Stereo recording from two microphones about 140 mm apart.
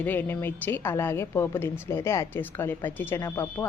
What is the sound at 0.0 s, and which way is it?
A woman's voice, 15° left (ahead or behind).